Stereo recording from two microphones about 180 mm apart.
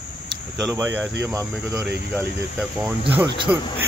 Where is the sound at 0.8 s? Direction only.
10° right (ahead or behind).